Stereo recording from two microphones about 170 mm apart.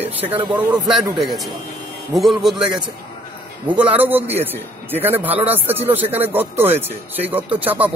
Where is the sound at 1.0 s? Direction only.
20° right (ahead or behind).